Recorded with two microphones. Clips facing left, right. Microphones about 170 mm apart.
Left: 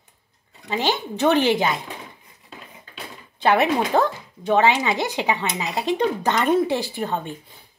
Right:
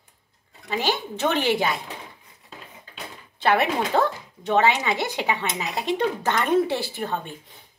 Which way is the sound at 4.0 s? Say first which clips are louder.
Left 2 dB; 15° left (ahead or behind).